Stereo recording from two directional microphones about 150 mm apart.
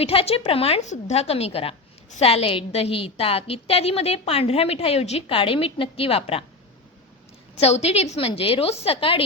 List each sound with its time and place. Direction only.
0.0 s a woman's voice: 40° left (ahead or behind)
7.5 s a woman's voice: 45° left (ahead or behind)